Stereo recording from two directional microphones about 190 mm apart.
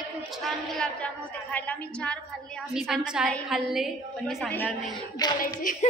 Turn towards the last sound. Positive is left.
turn(degrees=45)  # may be behind; listen again after turning